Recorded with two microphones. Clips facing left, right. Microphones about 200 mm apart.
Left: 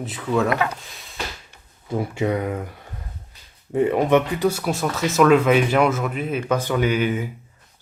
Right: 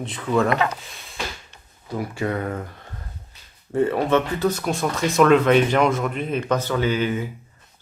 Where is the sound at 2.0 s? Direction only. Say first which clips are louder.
Left 3 dB; 20° left (ahead or behind).